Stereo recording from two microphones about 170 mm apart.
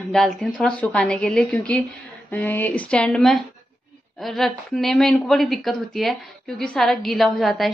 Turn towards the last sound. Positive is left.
turn(degrees=0)  # may be behind; listen again after turning